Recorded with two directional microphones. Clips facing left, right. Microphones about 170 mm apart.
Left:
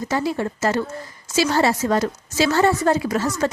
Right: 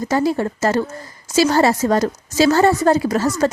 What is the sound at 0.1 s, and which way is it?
A woman's voice, 40° right (ahead or behind).